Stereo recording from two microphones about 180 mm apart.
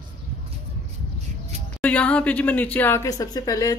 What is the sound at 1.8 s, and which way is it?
Speech, 5° left (ahead or behind).